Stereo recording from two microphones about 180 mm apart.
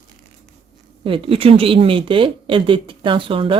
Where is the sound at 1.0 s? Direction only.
30° right (ahead or behind).